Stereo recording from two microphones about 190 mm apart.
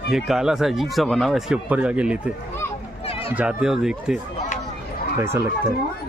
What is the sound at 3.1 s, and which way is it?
Run, 30° left (ahead or behind).